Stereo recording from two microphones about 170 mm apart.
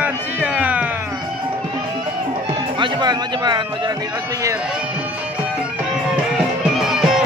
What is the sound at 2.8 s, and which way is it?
Speech, 25° right (ahead or behind).